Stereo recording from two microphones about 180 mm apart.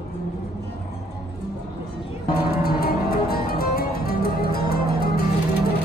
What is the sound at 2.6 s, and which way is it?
Music, 60° left (ahead or behind).